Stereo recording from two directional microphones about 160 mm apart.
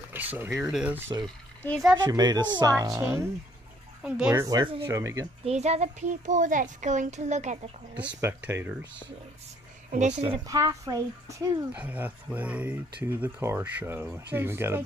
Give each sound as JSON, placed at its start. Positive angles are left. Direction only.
{"t": 0.1, "sound": "speech", "side_deg": -10}
{"t": 0.7, "sound": "speech", "side_deg": -5}
{"t": 2.0, "sound": "a woman's voice", "side_deg": -25}
{"t": 4.0, "sound": "speech", "side_deg": -10}
{"t": 4.4, "sound": "a woman's voice", "side_deg": -25}
{"t": 5.4, "sound": "speech", "side_deg": -45}
{"t": 8.2, "sound": "speech", "side_deg": -15}
{"t": 9.8, "sound": "a woman's voice", "side_deg": -45}
{"t": 10.3, "sound": "speech", "side_deg": -20}